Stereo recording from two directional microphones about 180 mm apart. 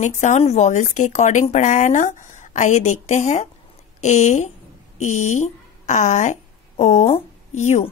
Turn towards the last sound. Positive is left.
turn(degrees=40)  # may be behind; listen again after turning